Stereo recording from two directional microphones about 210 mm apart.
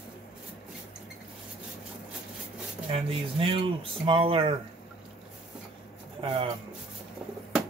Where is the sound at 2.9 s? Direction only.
25° right (ahead or behind).